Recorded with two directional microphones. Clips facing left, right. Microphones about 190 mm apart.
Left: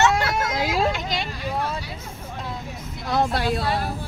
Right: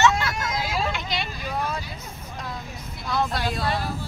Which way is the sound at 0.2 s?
60° left (ahead or behind).